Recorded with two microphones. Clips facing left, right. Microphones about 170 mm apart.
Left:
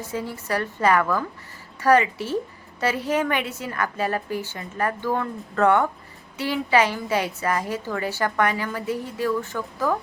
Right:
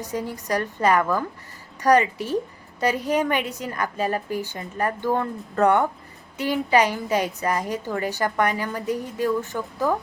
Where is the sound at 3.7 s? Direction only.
15° right (ahead or behind).